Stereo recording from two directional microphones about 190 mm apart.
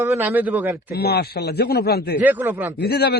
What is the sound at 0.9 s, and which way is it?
Speech, 60° left (ahead or behind).